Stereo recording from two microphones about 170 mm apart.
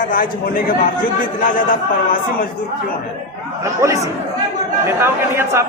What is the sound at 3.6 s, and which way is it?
Speech, 20° right (ahead or behind).